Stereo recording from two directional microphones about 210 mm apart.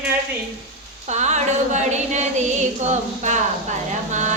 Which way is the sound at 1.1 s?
35° right (ahead or behind).